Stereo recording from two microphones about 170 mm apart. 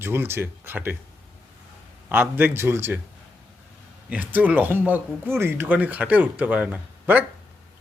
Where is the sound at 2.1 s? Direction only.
10° right (ahead or behind).